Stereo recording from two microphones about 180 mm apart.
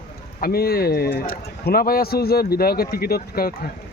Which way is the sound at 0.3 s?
55° left (ahead or behind).